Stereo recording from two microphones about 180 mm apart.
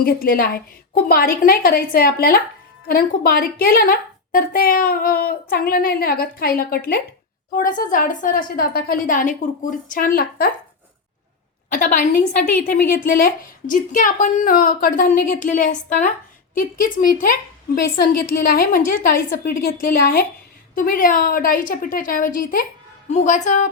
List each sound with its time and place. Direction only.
0.0 s a woman's voice: 55° left (ahead or behind)
11.7 s a woman's voice: 45° left (ahead or behind)